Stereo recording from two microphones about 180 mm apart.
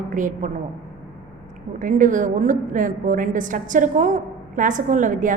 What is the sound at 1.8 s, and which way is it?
A woman's voice, 45° right (ahead or behind).